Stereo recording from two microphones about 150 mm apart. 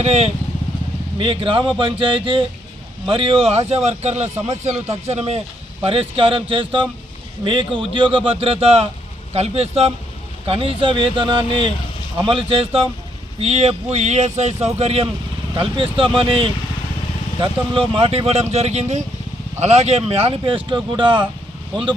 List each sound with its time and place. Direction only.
0.0 s speech: 45° right (ahead or behind)